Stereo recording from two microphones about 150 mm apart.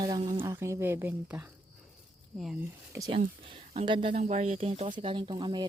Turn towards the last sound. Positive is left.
turn(degrees=-30)  # may be behind; listen again after turning